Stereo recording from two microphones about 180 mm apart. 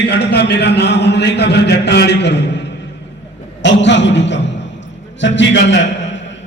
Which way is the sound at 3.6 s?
80° left.